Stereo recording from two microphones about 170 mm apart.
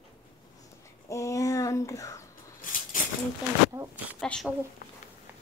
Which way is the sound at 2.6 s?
55° left (ahead or behind).